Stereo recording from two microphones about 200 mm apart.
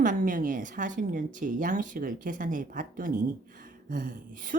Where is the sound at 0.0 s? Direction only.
40° right (ahead or behind).